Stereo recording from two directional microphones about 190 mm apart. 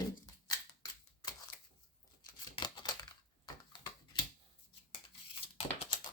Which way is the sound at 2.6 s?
20° left (ahead or behind).